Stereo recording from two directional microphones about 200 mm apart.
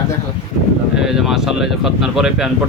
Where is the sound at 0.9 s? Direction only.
Centre (ahead or behind).